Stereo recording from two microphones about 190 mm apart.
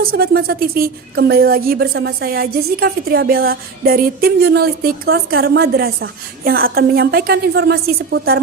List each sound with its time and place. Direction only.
0.0 s a woman's voice: 55° right (ahead or behind)